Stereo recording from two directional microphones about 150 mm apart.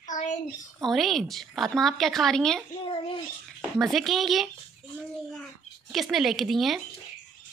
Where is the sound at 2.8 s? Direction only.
35° left (ahead or behind).